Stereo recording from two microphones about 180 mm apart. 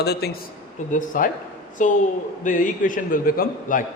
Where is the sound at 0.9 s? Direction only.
50° left (ahead or behind).